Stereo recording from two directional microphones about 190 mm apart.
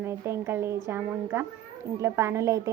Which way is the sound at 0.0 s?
15° right (ahead or behind).